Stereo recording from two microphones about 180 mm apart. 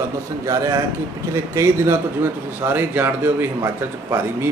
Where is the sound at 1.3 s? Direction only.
15° right (ahead or behind).